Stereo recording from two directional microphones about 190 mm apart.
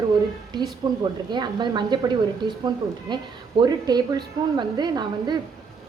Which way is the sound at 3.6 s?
20° right (ahead or behind).